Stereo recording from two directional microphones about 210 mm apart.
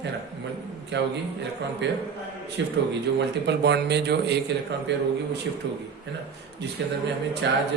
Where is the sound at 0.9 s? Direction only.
55° right (ahead or behind).